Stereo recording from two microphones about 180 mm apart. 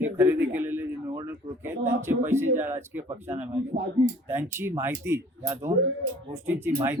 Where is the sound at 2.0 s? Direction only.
15° right (ahead or behind).